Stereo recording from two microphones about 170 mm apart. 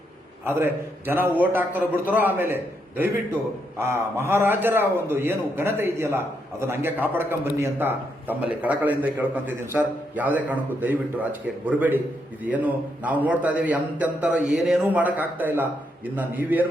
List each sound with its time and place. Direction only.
0.4 s a man's voice: 15° right (ahead or behind)
3.8 s a man's voice: 15° right (ahead or behind)